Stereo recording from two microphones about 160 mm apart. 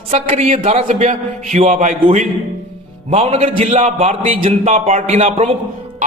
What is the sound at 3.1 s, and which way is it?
A man's voice, 50° right (ahead or behind).